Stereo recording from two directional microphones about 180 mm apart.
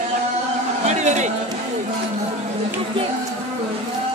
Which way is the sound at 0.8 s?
40° right (ahead or behind).